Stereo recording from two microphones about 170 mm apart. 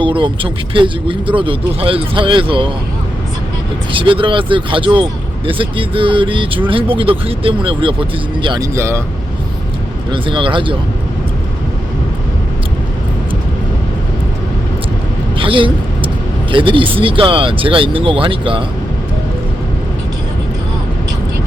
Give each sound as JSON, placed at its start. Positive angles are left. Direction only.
{"t": 0.0, "sound": "speech", "side_deg": -30}
{"t": 3.9, "sound": "speech", "side_deg": -30}
{"t": 10.1, "sound": "speech", "side_deg": -30}
{"t": 15.4, "sound": "vehicle", "side_deg": -30}
{"t": 16.5, "sound": "speech", "side_deg": -30}